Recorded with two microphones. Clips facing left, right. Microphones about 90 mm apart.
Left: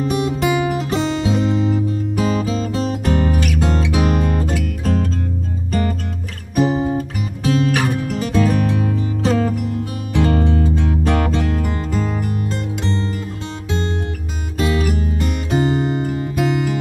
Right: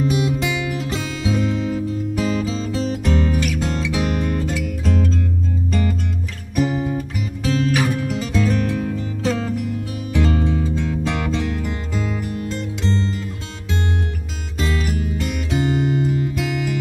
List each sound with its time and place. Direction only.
0.0 s music: 45° left (ahead or behind)
1.3 s music: 30° left (ahead or behind)
2.2 s music: 50° left (ahead or behind)
14.6 s music: 50° left (ahead or behind)
15.7 s music: 35° left (ahead or behind)